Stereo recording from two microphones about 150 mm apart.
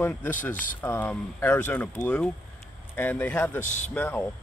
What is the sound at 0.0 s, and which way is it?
Speech, 10° left (ahead or behind).